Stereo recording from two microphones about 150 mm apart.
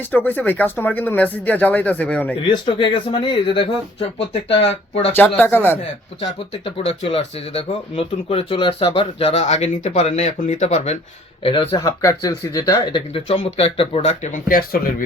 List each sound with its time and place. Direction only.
0.1 s speech: 15° left (ahead or behind)
2.5 s speech: 35° left (ahead or behind)
5.4 s speech: 15° left (ahead or behind)
6.1 s speech: 40° left (ahead or behind)
11.8 s speech: 20° left (ahead or behind); by 14.9 s 75° left (ahead or behind)